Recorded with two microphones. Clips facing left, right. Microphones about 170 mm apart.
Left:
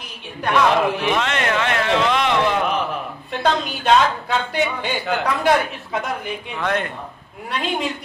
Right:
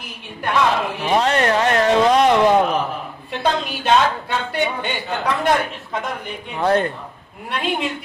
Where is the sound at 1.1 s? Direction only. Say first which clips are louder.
Right 4 dB; 35° right (ahead or behind).